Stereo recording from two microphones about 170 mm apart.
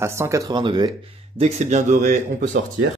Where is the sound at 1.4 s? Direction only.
45° right (ahead or behind).